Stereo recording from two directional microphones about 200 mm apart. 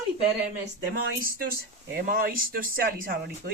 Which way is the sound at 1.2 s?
50° right (ahead or behind).